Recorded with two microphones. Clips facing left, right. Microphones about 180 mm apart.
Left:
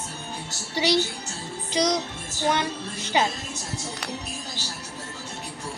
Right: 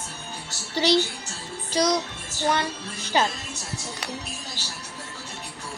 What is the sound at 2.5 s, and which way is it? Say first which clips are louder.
Speech: even; 20° left (ahead or behind).